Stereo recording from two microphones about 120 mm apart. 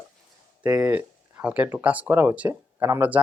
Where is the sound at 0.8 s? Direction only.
10° right (ahead or behind).